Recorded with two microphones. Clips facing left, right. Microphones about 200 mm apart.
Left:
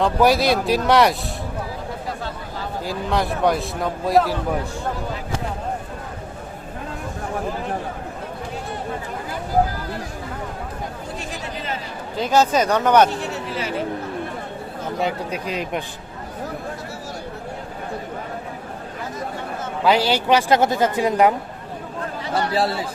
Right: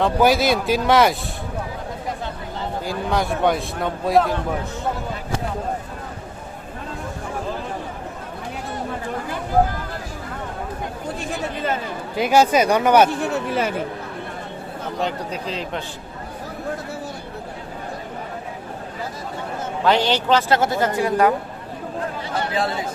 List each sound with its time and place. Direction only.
0.0 s a man's voice: centre (ahead or behind)
2.8 s a man's voice: centre (ahead or behind)
12.1 s speech: 10° right (ahead or behind)
13.5 s speech: 50° right (ahead or behind)
15.0 s speech: 10° left (ahead or behind)
19.8 s speech: 10° left (ahead or behind)